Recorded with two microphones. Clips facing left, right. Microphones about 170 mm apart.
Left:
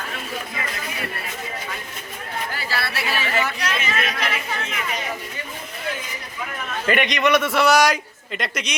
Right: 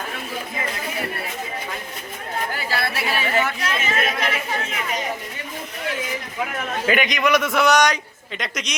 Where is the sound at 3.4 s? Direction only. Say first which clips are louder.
Right 1 dB; 50° right (ahead or behind).